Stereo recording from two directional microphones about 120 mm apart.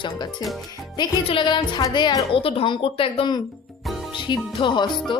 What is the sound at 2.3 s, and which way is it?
Speech, 50° left (ahead or behind).